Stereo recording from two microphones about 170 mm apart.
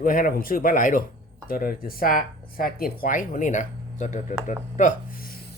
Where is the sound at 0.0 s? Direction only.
55° left (ahead or behind).